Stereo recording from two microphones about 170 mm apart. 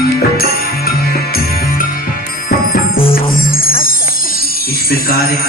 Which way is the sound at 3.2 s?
60° left (ahead or behind).